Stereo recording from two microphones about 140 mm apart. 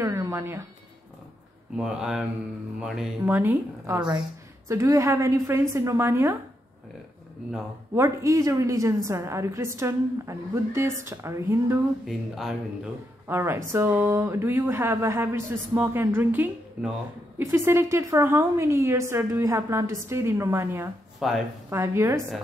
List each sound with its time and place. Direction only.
0.0 s a sound: 20° right (ahead or behind)
1.8 s speech: 5° right (ahead or behind)
3.3 s a woman's voice: 15° right (ahead or behind)
7.4 s speech: 10° right (ahead or behind)
7.9 s a woman's voice: 20° right (ahead or behind)
12.1 s speech: centre (ahead or behind)
13.3 s a woman's voice: 15° right (ahead or behind)
21.2 s speech: centre (ahead or behind)
21.6 s a woman's voice: 20° right (ahead or behind)